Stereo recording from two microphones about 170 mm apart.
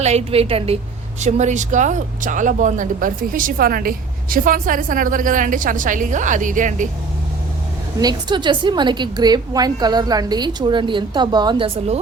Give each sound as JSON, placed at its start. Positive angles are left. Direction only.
{"t": 0.0, "sound": "a woman's voice", "side_deg": -40}
{"t": 7.9, "sound": "a woman's voice", "side_deg": -25}